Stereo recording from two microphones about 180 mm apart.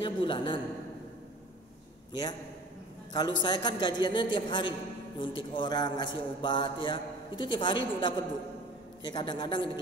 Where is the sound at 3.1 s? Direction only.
25° left (ahead or behind).